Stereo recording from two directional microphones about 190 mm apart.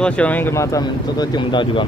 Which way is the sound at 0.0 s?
5° left (ahead or behind).